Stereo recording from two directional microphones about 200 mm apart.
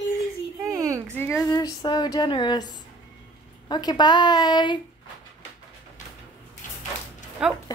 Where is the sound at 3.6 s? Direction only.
20° left (ahead or behind).